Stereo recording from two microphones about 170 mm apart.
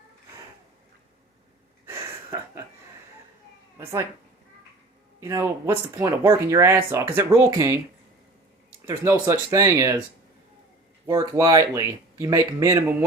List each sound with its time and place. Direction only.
1.9 s a sound: 15° right (ahead or behind)
5.2 s speech: 15° right (ahead or behind)
8.9 s speech: 15° right (ahead or behind)
11.0 s speech: 15° right (ahead or behind)